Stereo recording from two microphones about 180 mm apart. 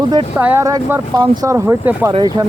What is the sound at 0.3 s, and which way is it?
Speech, 15° right (ahead or behind).